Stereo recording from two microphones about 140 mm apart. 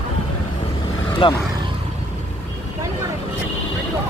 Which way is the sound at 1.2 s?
40° left (ahead or behind).